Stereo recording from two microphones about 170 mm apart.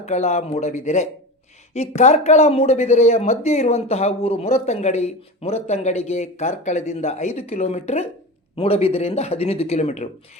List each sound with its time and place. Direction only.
0.0 s speech: 40° left (ahead or behind)